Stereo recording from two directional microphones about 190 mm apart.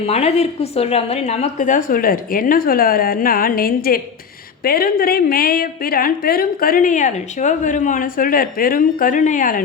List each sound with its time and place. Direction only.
0.1 s a woman's voice: 35° left (ahead or behind)